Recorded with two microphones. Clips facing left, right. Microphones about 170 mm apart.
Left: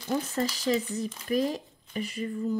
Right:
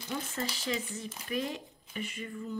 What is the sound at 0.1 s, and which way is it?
Speech, 40° left (ahead or behind).